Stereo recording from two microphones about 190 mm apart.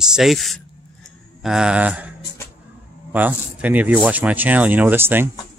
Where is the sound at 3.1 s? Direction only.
10° right (ahead or behind).